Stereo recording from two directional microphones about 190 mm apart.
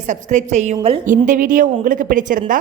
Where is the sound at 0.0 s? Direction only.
40° right (ahead or behind).